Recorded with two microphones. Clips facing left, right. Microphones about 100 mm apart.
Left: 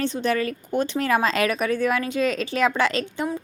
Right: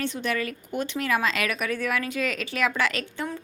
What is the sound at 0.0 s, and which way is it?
Speech, 30° left (ahead or behind).